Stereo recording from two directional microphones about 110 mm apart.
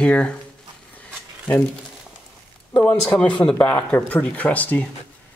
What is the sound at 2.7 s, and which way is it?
Speech, 10° left (ahead or behind).